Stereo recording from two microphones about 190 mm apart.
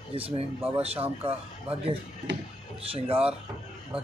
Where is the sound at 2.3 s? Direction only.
70° right (ahead or behind).